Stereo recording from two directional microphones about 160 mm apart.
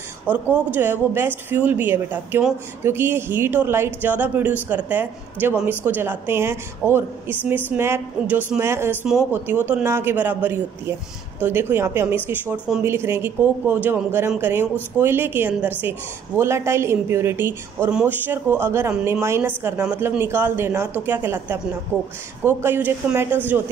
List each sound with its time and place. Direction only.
0.3 s speech: 10° right (ahead or behind)